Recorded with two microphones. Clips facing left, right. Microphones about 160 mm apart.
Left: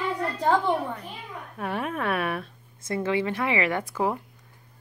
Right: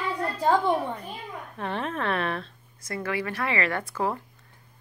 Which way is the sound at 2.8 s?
20° left (ahead or behind).